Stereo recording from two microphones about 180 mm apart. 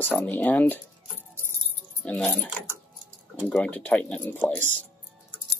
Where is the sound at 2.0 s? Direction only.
5° left (ahead or behind).